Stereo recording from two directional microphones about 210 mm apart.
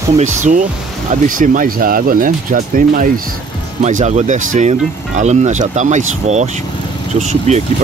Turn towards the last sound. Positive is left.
turn(degrees=-35)  # may be behind; listen again after turning